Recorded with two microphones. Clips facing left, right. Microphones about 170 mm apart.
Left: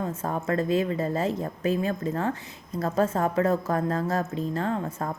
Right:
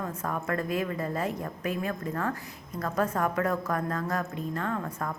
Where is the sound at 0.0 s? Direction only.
25° left (ahead or behind).